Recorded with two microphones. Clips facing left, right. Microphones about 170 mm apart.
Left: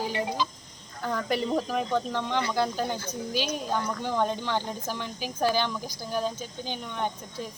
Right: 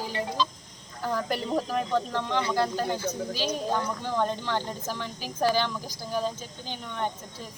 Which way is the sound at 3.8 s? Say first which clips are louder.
Left 1 dB; 5° left (ahead or behind).